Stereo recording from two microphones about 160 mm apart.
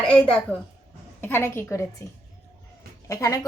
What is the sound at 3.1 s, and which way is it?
Speech, 20° left (ahead or behind).